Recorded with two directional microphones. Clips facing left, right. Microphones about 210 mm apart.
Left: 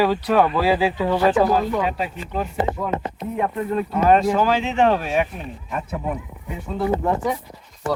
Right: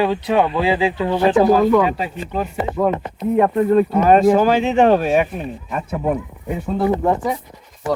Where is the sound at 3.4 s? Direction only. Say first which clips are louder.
Right 9 dB; 50° right (ahead or behind).